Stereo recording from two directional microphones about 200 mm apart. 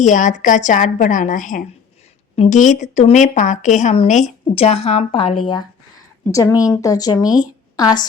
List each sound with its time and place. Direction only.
0.0 s a woman's voice: 40° left (ahead or behind); by 8.0 s 20° left (ahead or behind)